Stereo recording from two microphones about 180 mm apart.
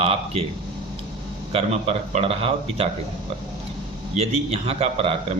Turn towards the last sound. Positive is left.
turn(degrees=-35)  # may be behind; listen again after turning